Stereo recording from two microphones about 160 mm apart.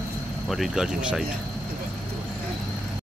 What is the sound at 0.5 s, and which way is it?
Speech, centre (ahead or behind).